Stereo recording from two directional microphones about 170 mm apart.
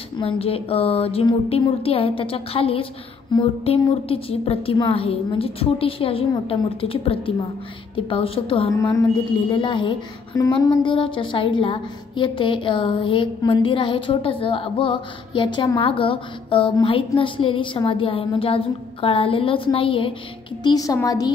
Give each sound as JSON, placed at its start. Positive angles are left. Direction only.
{"t": 0.2, "sound": "a woman's voice", "side_deg": 35}
{"t": 8.7, "sound": "a woman's voice", "side_deg": 20}
{"t": 20.6, "sound": "a woman's voice", "side_deg": 20}